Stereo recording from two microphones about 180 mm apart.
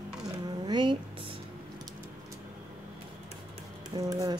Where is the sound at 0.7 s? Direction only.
25° right (ahead or behind).